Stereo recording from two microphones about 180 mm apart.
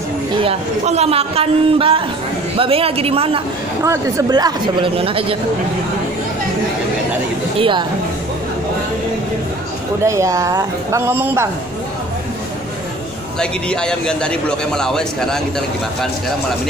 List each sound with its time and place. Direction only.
0.4 s a man's voice: 35° right (ahead or behind)
3.8 s speech: 15° right (ahead or behind)
7.5 s speech: 30° right (ahead or behind)
10.0 s speech: 15° right (ahead or behind)
13.4 s a man's voice: 5° left (ahead or behind)